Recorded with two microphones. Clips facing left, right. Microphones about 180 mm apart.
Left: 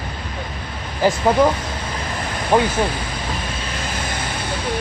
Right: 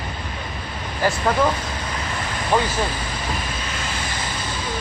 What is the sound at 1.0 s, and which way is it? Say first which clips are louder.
Speech: left 4 dB; 15° left (ahead or behind).